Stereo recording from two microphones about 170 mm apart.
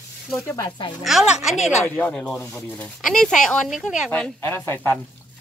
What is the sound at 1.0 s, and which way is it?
Speech, 5° right (ahead or behind).